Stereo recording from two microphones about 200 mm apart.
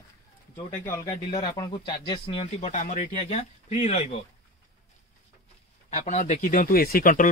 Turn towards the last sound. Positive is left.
turn(degrees=40)  # may be behind; listen again after turning